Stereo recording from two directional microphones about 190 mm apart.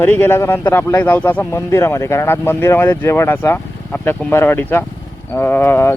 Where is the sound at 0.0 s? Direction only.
10° left (ahead or behind).